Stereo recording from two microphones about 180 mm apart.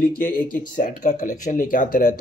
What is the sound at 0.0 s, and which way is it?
Speech, 50° left (ahead or behind).